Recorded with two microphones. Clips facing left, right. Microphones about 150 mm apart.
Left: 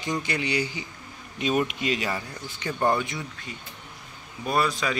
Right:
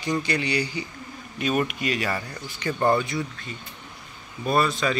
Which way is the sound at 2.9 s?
20° left (ahead or behind).